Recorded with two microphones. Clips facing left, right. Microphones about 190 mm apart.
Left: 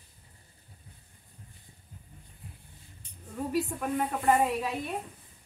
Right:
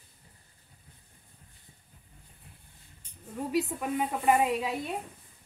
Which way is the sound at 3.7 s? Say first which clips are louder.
Even; 15° right (ahead or behind).